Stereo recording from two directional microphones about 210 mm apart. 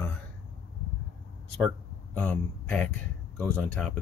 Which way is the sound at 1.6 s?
5° left (ahead or behind).